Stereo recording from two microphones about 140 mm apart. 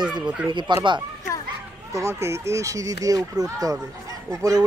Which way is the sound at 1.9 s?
20° right (ahead or behind).